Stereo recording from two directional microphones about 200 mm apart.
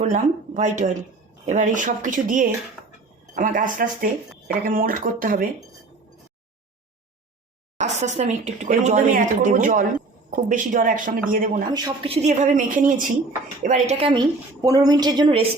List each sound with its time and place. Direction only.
0.0 s speech: 35° right (ahead or behind)
7.8 s speech: 35° right (ahead or behind)
11.7 s a woman's voice: 25° right (ahead or behind)